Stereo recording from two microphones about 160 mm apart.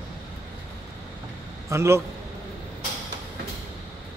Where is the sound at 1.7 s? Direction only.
15° right (ahead or behind).